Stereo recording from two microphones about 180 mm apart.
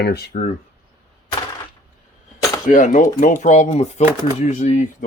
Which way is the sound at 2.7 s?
45° left (ahead or behind).